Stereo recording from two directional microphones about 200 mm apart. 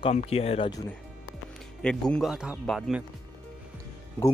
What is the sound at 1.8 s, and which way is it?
Speech, 5° left (ahead or behind).